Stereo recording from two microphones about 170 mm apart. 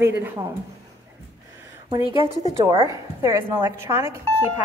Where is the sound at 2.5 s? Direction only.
20° right (ahead or behind).